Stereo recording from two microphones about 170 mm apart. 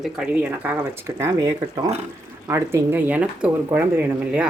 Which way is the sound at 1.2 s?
15° right (ahead or behind).